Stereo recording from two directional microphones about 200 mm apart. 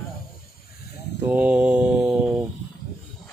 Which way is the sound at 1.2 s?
10° right (ahead or behind).